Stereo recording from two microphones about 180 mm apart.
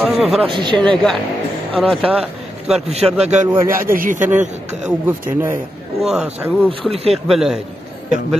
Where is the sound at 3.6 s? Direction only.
50° right (ahead or behind).